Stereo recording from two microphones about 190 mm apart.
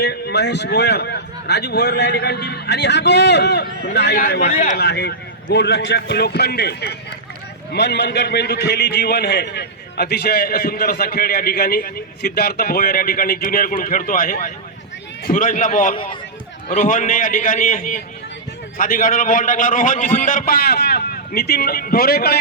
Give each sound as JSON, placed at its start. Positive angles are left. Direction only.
{"t": 0.0, "sound": "a man's voice", "side_deg": 60}
{"t": 4.4, "sound": "speech", "side_deg": 40}
{"t": 4.8, "sound": "a man's voice", "side_deg": 65}